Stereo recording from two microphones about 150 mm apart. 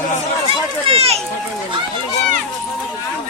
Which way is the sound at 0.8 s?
40° right (ahead or behind).